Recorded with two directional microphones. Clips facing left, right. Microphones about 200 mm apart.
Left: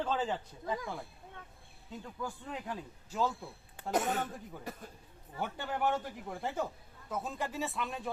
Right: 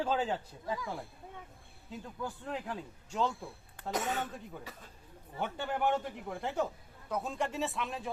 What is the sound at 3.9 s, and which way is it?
Speech, 50° left (ahead or behind).